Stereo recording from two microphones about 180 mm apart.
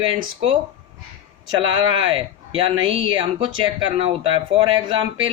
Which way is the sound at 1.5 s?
25° right (ahead or behind).